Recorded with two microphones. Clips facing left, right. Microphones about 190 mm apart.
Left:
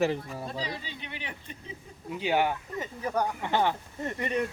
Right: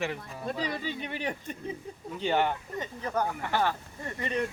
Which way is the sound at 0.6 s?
50° right (ahead or behind).